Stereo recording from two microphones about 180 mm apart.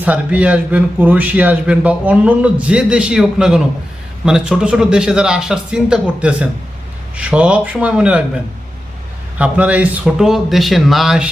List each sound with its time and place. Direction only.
0.0 s a man's voice: 10° right (ahead or behind)
9.4 s speech: 5° right (ahead or behind)